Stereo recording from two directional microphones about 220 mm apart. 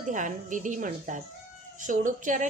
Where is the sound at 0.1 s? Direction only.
35° right (ahead or behind).